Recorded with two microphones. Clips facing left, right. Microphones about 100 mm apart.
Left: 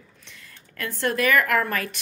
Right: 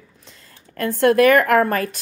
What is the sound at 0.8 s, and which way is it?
A woman's voice, 50° right (ahead or behind).